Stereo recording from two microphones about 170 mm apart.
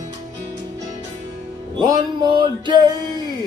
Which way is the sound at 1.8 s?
25° right (ahead or behind).